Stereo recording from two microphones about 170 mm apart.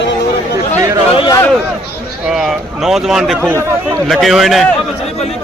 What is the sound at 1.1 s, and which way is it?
Speech, 30° left (ahead or behind).